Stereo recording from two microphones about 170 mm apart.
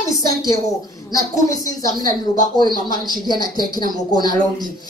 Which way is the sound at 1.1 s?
20° left (ahead or behind).